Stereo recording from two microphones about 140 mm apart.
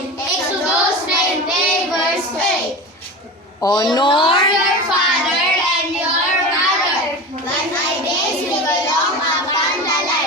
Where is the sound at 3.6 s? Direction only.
30° left (ahead or behind).